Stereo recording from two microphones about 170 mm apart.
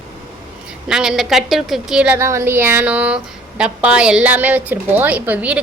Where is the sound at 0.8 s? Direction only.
5° right (ahead or behind).